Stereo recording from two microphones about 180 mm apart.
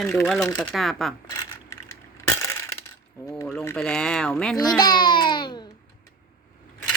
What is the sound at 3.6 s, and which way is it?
Speech, 10° left (ahead or behind).